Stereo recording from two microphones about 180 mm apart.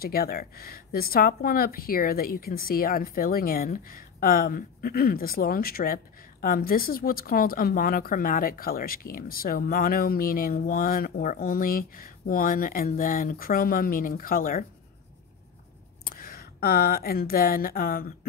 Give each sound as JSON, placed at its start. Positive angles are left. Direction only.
{"t": 0.0, "sound": "speech", "side_deg": 55}
{"t": 16.2, "sound": "speech", "side_deg": 55}